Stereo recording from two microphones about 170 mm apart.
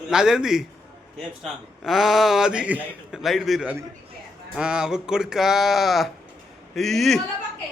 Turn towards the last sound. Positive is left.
turn(degrees=0)  # may be behind; listen again after turning